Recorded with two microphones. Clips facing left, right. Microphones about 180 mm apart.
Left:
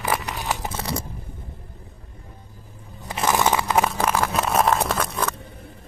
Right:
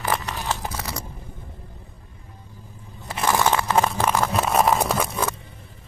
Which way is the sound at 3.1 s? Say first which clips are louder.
Even; 15° left (ahead or behind).